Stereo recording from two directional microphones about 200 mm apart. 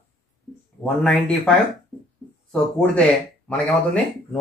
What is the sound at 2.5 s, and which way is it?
Speech, 5° left (ahead or behind).